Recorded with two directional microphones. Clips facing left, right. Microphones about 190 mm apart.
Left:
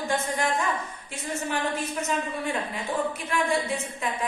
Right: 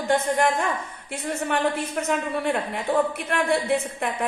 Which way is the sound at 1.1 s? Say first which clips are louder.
Right 4 dB; 60° right (ahead or behind).